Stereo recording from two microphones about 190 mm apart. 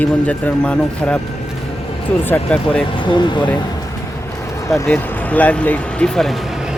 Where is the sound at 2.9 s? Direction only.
25° left (ahead or behind).